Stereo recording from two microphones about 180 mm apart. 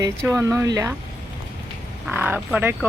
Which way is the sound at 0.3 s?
15° right (ahead or behind).